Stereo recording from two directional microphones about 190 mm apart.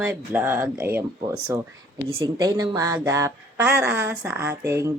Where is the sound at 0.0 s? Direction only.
10° right (ahead or behind).